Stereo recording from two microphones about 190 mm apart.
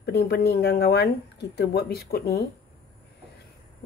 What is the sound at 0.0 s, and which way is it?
Speech, 60° left (ahead or behind).